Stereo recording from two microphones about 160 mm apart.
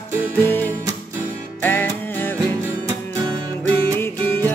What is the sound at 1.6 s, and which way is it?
Music, 10° left (ahead or behind).